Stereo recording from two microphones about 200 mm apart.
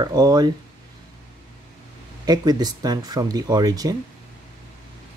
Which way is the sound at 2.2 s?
20° right (ahead or behind).